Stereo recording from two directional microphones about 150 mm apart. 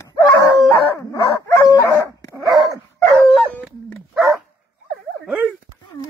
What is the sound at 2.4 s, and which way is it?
Dog, 30° right (ahead or behind).